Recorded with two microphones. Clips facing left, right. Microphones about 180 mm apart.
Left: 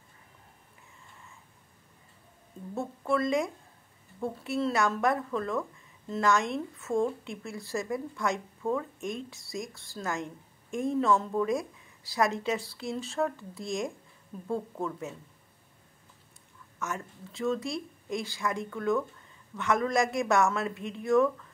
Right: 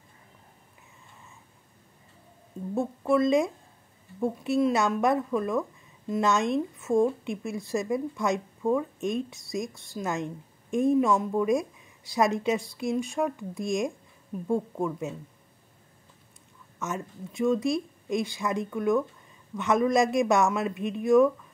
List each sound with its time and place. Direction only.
2.7 s a woman's voice: 15° right (ahead or behind)
16.8 s a woman's voice: 20° right (ahead or behind)